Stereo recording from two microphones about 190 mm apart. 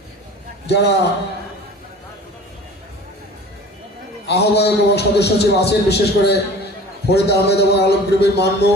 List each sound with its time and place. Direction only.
0.7 s a man's voice: 65° left (ahead or behind)
4.3 s a man's voice: 60° left (ahead or behind)